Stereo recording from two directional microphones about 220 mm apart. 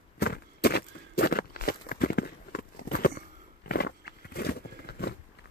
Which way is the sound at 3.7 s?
45° left (ahead or behind).